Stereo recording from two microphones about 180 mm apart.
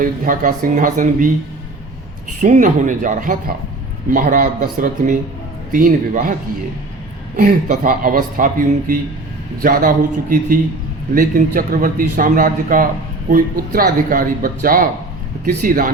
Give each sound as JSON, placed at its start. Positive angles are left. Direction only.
{"t": 0.0, "sound": "a man's voice", "side_deg": -50}
{"t": 2.4, "sound": "a man's voice", "side_deg": -45}
{"t": 7.3, "sound": "a man's voice", "side_deg": -50}